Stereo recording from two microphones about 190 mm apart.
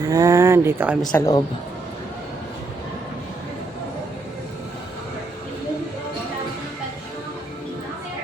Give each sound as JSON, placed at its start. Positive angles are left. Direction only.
{"t": 0.1, "sound": "speech", "side_deg": -20}
{"t": 1.0, "sound": "speech", "side_deg": 10}